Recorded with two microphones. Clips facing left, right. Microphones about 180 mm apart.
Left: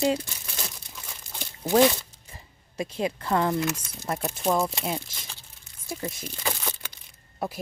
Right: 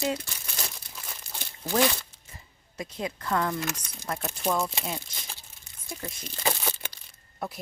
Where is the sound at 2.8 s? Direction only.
30° left (ahead or behind).